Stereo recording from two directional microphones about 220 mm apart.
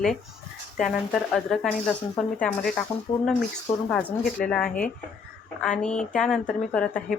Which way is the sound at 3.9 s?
5° left (ahead or behind).